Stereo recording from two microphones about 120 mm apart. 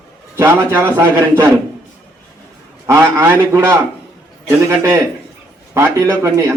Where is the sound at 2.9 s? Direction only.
20° right (ahead or behind).